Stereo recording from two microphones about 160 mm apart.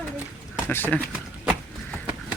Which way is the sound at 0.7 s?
10° left (ahead or behind).